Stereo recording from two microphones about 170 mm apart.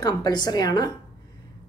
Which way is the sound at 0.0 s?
25° left (ahead or behind).